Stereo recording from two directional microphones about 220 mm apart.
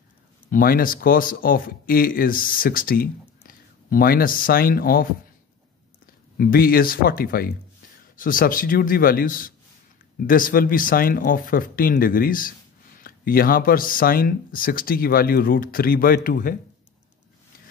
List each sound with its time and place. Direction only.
0.5 s speech: 40° left (ahead or behind)
6.3 s speech: 45° left (ahead or behind)